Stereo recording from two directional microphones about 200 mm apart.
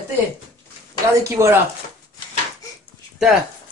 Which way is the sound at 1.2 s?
15° right (ahead or behind).